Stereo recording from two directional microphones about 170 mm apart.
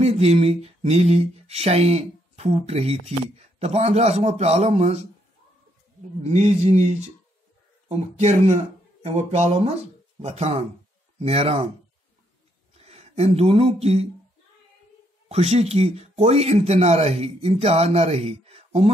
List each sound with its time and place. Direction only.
0.0 s speech: 35° right (ahead or behind)
6.2 s speech: 40° right (ahead or behind)
12.7 s speech: 40° right (ahead or behind)
15.2 s speech: 40° right (ahead or behind)